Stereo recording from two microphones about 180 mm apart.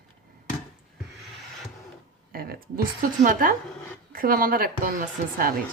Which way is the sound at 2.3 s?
55° right (ahead or behind).